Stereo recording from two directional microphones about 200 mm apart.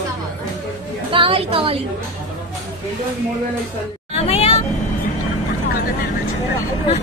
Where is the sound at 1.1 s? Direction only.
25° right (ahead or behind).